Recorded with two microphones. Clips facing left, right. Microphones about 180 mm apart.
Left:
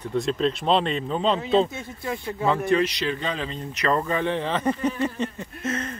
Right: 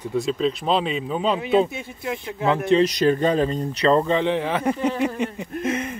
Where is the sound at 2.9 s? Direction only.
45° right (ahead or behind).